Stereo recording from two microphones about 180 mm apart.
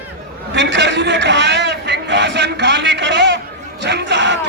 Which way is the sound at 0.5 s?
75° right (ahead or behind).